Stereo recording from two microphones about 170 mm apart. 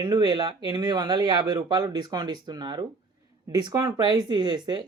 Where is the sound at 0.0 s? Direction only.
25° right (ahead or behind).